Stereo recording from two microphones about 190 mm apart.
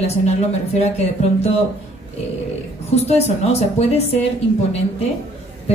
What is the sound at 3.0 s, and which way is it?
A woman's voice, 35° left (ahead or behind).